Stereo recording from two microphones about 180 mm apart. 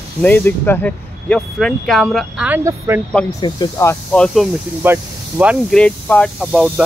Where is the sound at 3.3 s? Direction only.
20° left (ahead or behind); by 4.5 s 5° left (ahead or behind).